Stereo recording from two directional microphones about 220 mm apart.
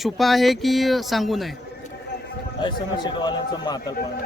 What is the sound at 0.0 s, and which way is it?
Speech, centre (ahead or behind).